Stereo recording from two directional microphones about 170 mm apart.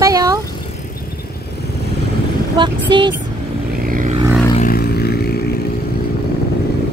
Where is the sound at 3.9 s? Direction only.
50° right (ahead or behind).